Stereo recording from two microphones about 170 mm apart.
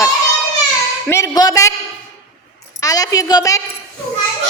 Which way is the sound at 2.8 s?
20° left (ahead or behind).